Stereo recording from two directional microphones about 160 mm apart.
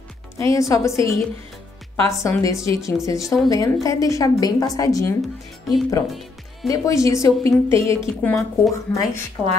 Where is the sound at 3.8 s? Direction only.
20° left (ahead or behind).